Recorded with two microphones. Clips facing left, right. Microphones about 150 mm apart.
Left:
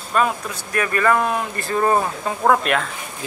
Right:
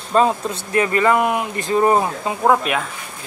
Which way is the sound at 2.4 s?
5° right (ahead or behind).